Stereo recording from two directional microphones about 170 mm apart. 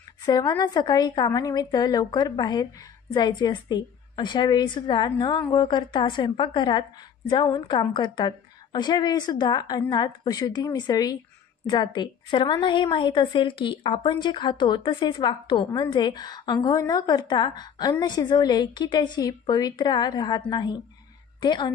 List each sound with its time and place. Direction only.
0.2 s a woman's voice: 25° left (ahead or behind)